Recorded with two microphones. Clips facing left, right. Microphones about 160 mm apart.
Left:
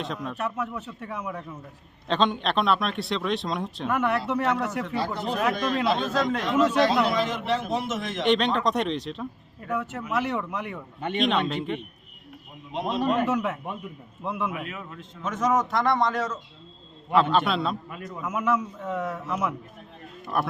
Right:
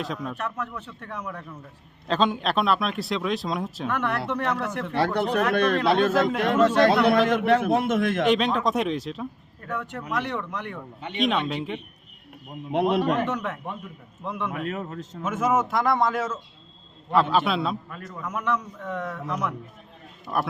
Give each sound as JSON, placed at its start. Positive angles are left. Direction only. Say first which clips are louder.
{"t": 0.0, "sound": "a man's voice", "louder": "right 1 dB", "side_deg": 0}
{"t": 0.3, "sound": "a man's voice", "louder": "left 2 dB", "side_deg": 10}
{"t": 2.0, "sound": "a man's voice", "louder": "right 1 dB", "side_deg": -5}
{"t": 4.9, "sound": "a man's voice", "louder": "right 6 dB", "side_deg": -70}
{"t": 8.2, "sound": "a man's voice", "louder": "left 4 dB", "side_deg": 0}
{"t": 12.7, "sound": "a man's voice", "louder": "right 4 dB", "side_deg": -65}
{"t": 13.2, "sound": "a man's voice", "louder": "left 3 dB", "side_deg": 5}
{"t": 14.6, "sound": "a man's voice", "louder": "right 6 dB", "side_deg": -40}
{"t": 15.2, "sound": "a man's voice", "louder": "right 1 dB", "side_deg": -5}
{"t": 17.8, "sound": "a man's voice", "louder": "left 1 dB", "side_deg": 10}